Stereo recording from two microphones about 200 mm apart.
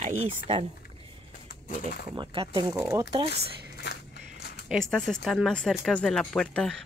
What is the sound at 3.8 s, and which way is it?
Biting, 55° left (ahead or behind).